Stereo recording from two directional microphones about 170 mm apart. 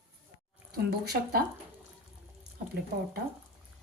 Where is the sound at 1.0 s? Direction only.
70° right (ahead or behind).